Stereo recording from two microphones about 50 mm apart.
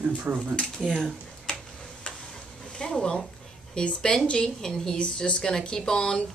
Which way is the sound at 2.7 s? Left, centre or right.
Centre.